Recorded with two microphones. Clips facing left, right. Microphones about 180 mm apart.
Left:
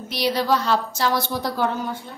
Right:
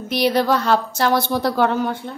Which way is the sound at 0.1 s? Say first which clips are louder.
Right 4 dB; 55° right (ahead or behind).